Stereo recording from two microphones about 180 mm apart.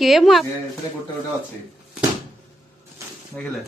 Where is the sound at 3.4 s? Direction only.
10° left (ahead or behind).